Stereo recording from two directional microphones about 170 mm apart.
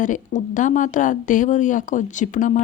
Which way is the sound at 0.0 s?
50° left (ahead or behind).